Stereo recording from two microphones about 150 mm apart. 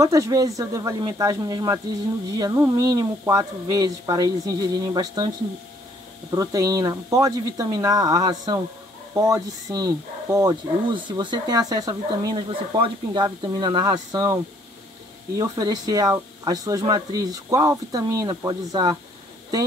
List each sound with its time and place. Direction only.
0.0 s speech: 20° right (ahead or behind)
6.3 s speech: 20° right (ahead or behind)